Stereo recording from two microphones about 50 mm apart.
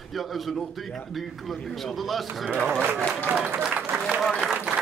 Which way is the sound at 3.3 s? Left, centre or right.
Right.